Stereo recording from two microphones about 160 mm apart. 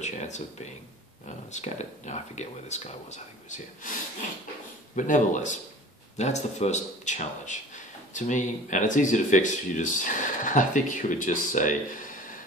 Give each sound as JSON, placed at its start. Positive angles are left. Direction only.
{"t": 0.0, "sound": "a man's voice", "side_deg": 45}